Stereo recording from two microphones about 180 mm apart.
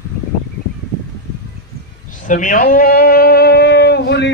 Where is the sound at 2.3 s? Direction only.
45° left (ahead or behind).